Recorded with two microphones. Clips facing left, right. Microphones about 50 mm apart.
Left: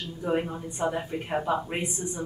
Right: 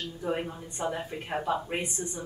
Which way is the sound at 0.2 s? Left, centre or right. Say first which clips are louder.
Left 5 dB; centre.